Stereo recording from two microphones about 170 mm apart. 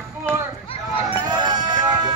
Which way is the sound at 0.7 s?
35° left (ahead or behind).